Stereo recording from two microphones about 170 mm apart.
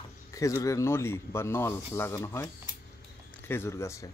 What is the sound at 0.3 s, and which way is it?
Speech, 20° left (ahead or behind).